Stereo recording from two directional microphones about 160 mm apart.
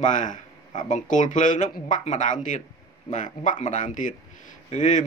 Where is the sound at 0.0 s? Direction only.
50° left (ahead or behind).